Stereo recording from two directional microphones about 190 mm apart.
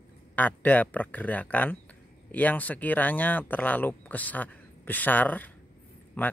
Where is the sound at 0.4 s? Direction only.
10° left (ahead or behind).